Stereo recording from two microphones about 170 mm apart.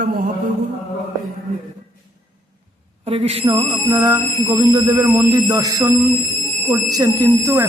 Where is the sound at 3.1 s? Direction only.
35° right (ahead or behind).